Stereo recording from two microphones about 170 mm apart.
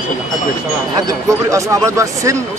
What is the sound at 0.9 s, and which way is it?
Speech, 20° right (ahead or behind).